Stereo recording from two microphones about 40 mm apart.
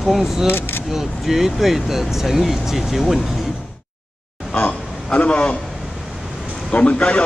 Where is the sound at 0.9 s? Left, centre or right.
Centre.